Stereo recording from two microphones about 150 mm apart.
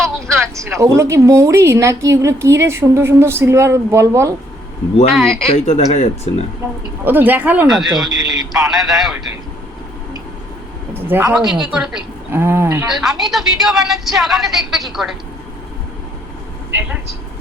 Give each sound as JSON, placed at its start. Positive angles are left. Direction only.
{"t": 0.8, "sound": "a woman's voice", "side_deg": -20}
{"t": 5.1, "sound": "a woman's voice", "side_deg": 0}
{"t": 5.5, "sound": "speech", "side_deg": 45}
{"t": 7.0, "sound": "a woman's voice", "side_deg": -15}
{"t": 10.9, "sound": "speech", "side_deg": -15}
{"t": 11.4, "sound": "a woman's voice", "side_deg": -5}
{"t": 12.3, "sound": "speech", "side_deg": -15}
{"t": 12.9, "sound": "a woman's voice", "side_deg": -5}